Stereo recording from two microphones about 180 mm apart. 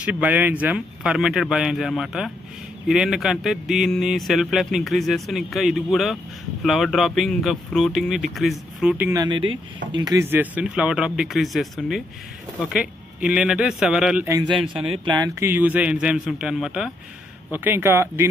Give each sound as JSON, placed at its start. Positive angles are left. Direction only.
{"t": 0.0, "sound": "speech", "side_deg": -10}
{"t": 9.2, "sound": "speech", "side_deg": -25}
{"t": 15.0, "sound": "a man's voice", "side_deg": -20}